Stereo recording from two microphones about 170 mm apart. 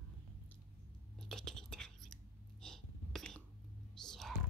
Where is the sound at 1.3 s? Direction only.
5° left (ahead or behind).